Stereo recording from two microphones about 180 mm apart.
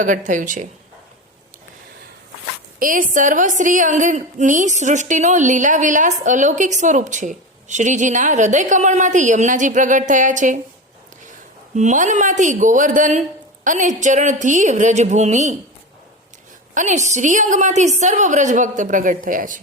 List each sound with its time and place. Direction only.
0.0 s a woman's voice: 45° right (ahead or behind)
2.7 s a woman's voice: 50° right (ahead or behind)
16.7 s a woman's voice: 40° right (ahead or behind)